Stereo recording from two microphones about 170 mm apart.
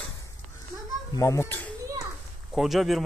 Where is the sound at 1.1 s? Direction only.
20° left (ahead or behind).